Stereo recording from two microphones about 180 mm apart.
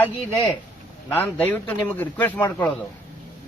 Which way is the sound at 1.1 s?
10° left (ahead or behind).